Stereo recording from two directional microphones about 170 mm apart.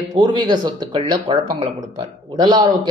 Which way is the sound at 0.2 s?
25° right (ahead or behind).